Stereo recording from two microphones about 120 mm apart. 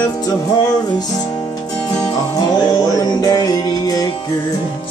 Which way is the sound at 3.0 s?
30° left (ahead or behind).